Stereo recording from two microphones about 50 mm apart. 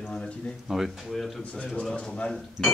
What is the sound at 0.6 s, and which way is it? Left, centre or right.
Speech, centre.